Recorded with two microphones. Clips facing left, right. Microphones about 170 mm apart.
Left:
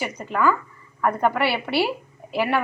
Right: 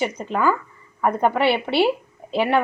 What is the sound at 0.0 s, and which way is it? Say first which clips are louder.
A woman's voice: right 1 dB; 20° right (ahead or behind).